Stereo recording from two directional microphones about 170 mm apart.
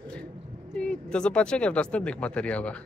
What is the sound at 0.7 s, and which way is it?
Speech, 5° left (ahead or behind).